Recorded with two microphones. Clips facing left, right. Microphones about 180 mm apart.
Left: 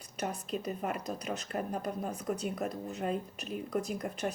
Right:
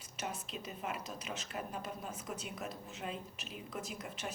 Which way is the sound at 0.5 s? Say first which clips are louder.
Left 7 dB; 45° left (ahead or behind).